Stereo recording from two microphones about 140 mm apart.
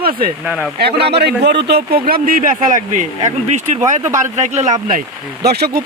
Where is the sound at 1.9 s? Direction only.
90° right.